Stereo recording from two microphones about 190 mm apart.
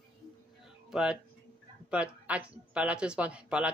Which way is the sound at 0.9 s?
5° right (ahead or behind).